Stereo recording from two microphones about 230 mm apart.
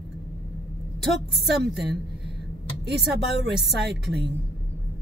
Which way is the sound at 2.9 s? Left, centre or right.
Right.